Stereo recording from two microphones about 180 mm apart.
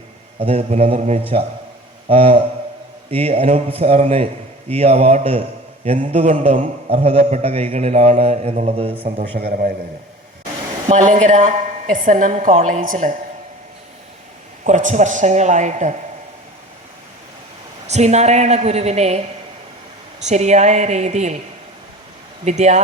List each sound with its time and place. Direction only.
0.3 s a man's voice: 30° right (ahead or behind)
9.4 s a woman's voice: 55° right (ahead or behind)
10.8 s a woman's voice: 45° right (ahead or behind)
14.6 s a man's voice: 45° right (ahead or behind)
17.8 s a man's voice: 40° right (ahead or behind)
20.2 s a man's voice: 40° right (ahead or behind)
22.4 s a man's voice: 40° right (ahead or behind)